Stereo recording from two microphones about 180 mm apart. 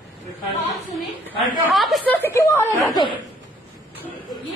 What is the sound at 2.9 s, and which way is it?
Speech, 25° left (ahead or behind).